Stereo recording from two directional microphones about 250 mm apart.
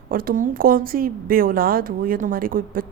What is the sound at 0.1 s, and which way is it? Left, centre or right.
A woman's voice, right.